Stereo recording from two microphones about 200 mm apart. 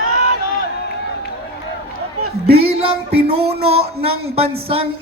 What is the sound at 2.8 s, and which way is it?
Speech, 30° right (ahead or behind).